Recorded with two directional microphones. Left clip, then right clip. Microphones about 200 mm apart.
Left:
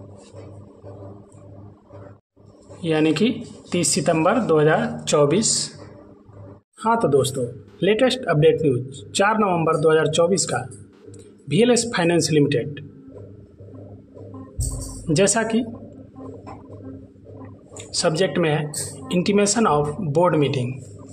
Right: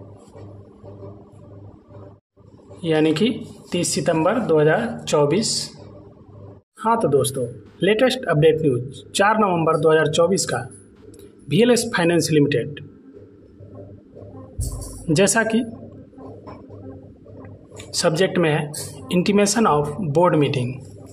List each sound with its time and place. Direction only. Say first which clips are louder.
2.8 s a man's voice: right 1 dB; 5° right (ahead or behind)
6.8 s a man's voice: even; centre (ahead or behind)
15.0 s speech: right 1 dB; 10° right (ahead or behind)
17.9 s speech: right 1 dB; 10° right (ahead or behind)